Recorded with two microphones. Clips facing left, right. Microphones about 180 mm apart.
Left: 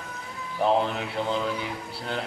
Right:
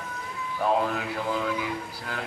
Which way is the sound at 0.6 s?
25° left (ahead or behind).